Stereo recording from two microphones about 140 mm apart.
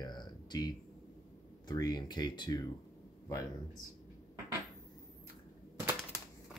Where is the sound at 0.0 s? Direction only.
30° left (ahead or behind).